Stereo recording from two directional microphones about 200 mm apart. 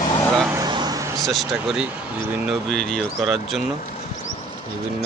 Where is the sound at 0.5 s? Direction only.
20° right (ahead or behind).